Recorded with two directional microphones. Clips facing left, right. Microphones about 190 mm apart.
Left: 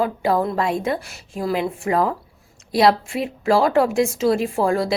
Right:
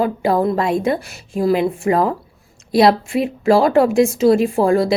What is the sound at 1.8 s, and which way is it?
A woman's voice, 30° right (ahead or behind).